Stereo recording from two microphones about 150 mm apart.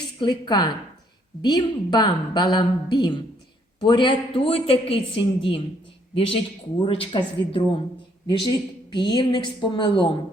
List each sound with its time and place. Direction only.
0.2 s a woman's voice: 30° left (ahead or behind)